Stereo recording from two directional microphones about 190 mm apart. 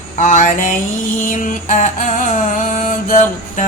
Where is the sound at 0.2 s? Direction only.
40° left (ahead or behind).